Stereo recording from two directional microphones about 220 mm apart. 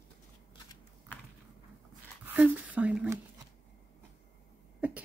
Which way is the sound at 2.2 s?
5° right (ahead or behind).